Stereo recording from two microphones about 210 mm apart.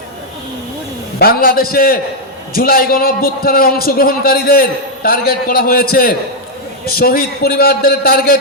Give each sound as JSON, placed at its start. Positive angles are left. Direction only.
{"t": 1.2, "sound": "a man's voice", "side_deg": 45}